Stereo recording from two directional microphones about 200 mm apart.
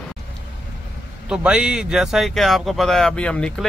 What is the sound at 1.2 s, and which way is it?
Speech, 5° right (ahead or behind).